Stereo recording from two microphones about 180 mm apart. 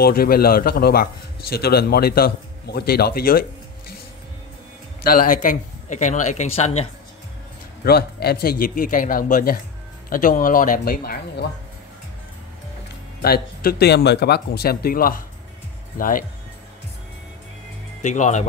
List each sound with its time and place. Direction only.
0.0 s speech: 55° left (ahead or behind)
5.0 s speech: 50° left (ahead or behind)
7.8 s a man's voice: 60° left (ahead or behind)
13.2 s a man's voice: 55° left (ahead or behind)
18.0 s speech: 40° left (ahead or behind)